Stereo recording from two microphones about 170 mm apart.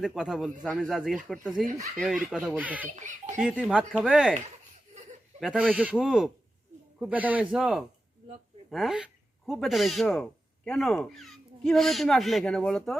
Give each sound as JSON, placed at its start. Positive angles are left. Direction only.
{"t": 0.0, "sound": "speech", "side_deg": -5}
{"t": 2.9, "sound": "speech", "side_deg": -45}
{"t": 3.4, "sound": "speech", "side_deg": -5}
{"t": 5.4, "sound": "speech", "side_deg": -5}